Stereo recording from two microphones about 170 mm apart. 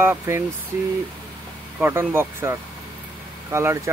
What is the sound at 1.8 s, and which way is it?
Speech, 15° right (ahead or behind).